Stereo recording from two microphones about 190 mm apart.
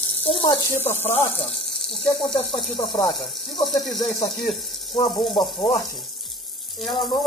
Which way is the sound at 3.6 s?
Centre (ahead or behind).